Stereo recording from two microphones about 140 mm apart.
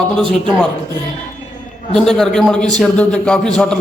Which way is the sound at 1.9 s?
5° left (ahead or behind).